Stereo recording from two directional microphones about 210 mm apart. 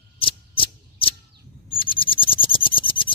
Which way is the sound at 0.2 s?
25° left (ahead or behind).